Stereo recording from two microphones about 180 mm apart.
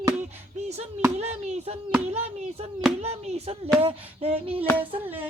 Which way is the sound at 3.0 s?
35° right (ahead or behind).